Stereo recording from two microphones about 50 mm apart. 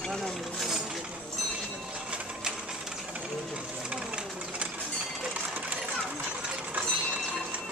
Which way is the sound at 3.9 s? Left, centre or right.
Right.